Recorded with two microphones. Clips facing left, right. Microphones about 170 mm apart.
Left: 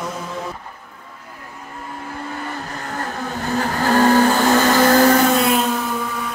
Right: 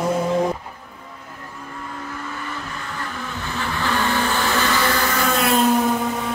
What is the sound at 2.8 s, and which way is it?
Vehicle, 45° left (ahead or behind).